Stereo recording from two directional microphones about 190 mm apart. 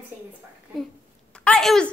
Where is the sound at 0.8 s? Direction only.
5° left (ahead or behind).